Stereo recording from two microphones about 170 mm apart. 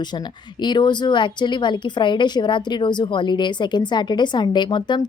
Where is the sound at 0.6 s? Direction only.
25° left (ahead or behind).